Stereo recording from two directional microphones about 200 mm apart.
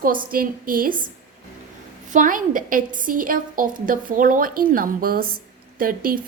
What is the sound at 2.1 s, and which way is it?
A woman's voice, 40° right (ahead or behind).